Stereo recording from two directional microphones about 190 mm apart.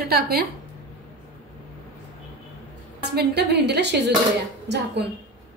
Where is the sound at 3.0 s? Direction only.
60° right (ahead or behind).